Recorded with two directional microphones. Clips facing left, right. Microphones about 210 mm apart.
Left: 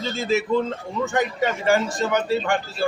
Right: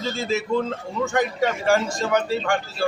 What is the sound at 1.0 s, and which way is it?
A man's voice, centre (ahead or behind).